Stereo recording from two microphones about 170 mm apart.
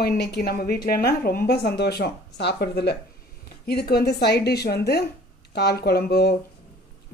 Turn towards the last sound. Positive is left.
turn(degrees=70)  # may be behind; listen again after turning